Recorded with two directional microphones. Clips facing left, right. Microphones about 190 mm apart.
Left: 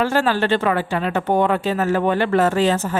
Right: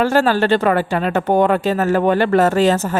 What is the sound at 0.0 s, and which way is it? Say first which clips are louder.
Speech: right 4 dB; 40° right (ahead or behind).